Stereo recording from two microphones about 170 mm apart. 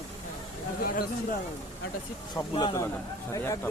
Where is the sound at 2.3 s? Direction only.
25° left (ahead or behind).